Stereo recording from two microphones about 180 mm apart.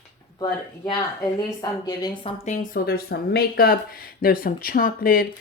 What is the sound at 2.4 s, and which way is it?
Speech, 45° left (ahead or behind).